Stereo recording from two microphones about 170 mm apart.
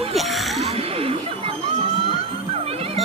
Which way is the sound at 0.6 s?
35° right (ahead or behind).